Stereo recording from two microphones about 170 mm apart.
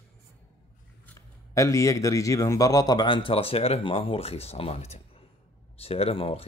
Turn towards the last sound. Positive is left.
turn(degrees=35)  # may be behind; listen again after turning